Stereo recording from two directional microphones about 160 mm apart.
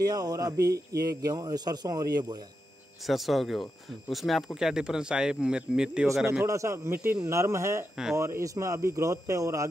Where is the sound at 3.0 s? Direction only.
Centre (ahead or behind).